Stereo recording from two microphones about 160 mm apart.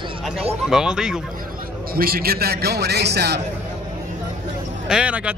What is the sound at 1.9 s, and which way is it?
A man's voice, 70° right (ahead or behind).